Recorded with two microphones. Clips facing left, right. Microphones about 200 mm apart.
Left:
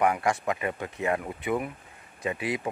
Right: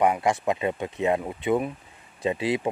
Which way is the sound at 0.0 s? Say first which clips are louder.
Right 3 dB; 20° right (ahead or behind).